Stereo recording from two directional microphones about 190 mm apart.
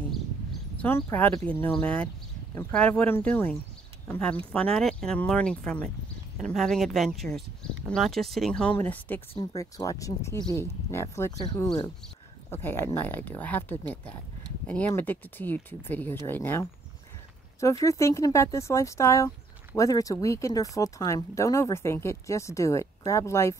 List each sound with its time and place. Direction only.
0.7 s speech: 10° left (ahead or behind)
9.3 s speech: 20° left (ahead or behind)